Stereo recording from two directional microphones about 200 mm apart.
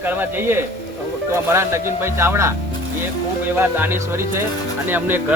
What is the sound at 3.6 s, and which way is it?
Speech, 10° right (ahead or behind).